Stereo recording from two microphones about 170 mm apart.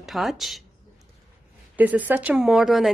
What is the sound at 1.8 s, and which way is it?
Speech, 10° right (ahead or behind).